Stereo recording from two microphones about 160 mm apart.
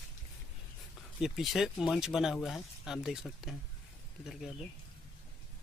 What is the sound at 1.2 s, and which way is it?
Speech, centre (ahead or behind).